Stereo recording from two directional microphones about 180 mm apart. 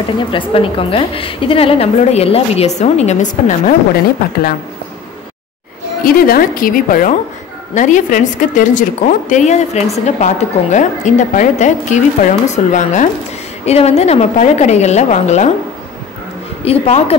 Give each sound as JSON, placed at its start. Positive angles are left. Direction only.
{"t": 0.3, "sound": "a woman's voice", "side_deg": 30}
{"t": 6.0, "sound": "a woman's voice", "side_deg": 55}
{"t": 16.6, "sound": "a woman's voice", "side_deg": 35}